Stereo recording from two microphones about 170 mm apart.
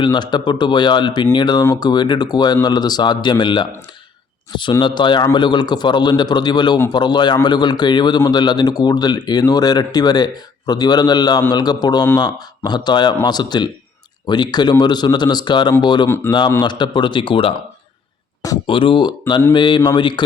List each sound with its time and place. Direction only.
0.0 s a man's voice: 25° left (ahead or behind)
16.0 s a man's voice: 15° left (ahead or behind)
16.5 s a man's voice: 25° left (ahead or behind)